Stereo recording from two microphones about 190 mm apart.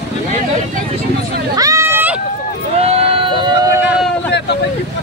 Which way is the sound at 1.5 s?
15° right (ahead or behind).